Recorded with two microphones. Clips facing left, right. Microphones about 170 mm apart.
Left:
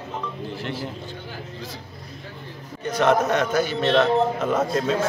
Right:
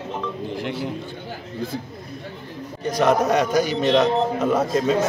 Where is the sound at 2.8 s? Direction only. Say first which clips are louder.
Right 1 dB; 10° right (ahead or behind).